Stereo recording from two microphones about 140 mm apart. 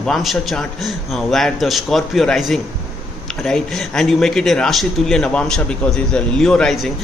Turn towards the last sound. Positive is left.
turn(degrees=5)  # may be behind; listen again after turning